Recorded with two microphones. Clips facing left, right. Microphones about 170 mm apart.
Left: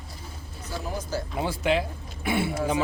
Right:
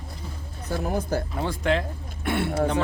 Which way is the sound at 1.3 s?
10° left (ahead or behind).